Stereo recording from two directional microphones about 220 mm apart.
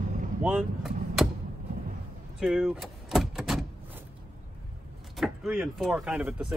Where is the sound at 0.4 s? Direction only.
5° right (ahead or behind).